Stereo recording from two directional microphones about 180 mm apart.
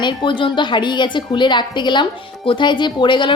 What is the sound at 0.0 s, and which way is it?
A woman's voice, 25° left (ahead or behind).